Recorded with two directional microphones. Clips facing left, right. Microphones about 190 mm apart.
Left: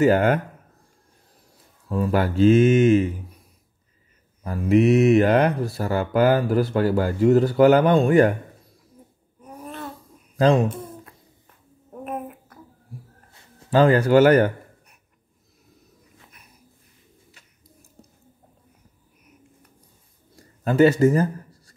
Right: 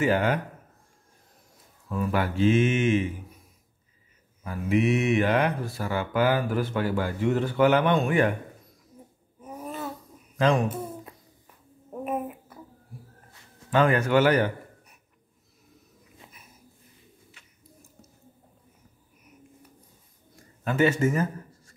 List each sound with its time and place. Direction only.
0.0 s speech: 45° left (ahead or behind)
1.9 s speech: 30° left (ahead or behind)
4.4 s speech: 40° left (ahead or behind)
9.4 s babbling: 5° right (ahead or behind)
10.3 s speech: 30° left (ahead or behind)
12.0 s a sound: 5° right (ahead or behind)
13.7 s speech: 35° left (ahead or behind)
20.3 s a sound: 35° left (ahead or behind)